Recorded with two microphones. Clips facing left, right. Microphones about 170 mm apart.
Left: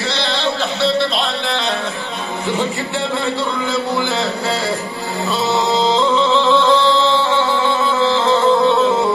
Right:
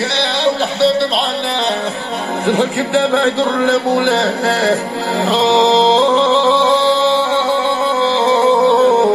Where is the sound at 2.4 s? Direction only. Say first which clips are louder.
Right 6 dB; 70° right (ahead or behind).